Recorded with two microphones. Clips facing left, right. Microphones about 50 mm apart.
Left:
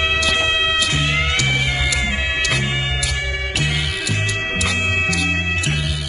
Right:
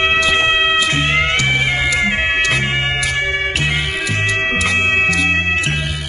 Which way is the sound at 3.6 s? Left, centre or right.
Right.